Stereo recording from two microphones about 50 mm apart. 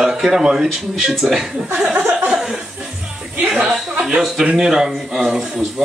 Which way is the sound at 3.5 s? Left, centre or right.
Centre.